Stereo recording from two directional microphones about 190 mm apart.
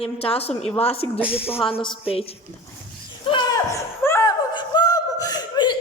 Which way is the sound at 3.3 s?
20° left (ahead or behind).